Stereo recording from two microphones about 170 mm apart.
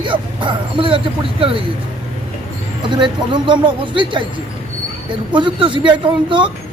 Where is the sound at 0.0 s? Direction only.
30° right (ahead or behind).